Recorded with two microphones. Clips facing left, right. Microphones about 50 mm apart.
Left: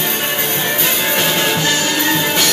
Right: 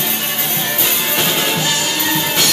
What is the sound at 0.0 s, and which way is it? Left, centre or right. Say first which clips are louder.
Music: left 3 dB; centre.